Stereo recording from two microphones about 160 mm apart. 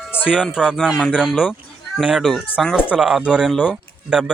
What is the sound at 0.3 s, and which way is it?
Speech, 5° right (ahead or behind).